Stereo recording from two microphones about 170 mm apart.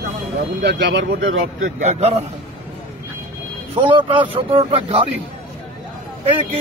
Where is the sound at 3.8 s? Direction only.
30° right (ahead or behind).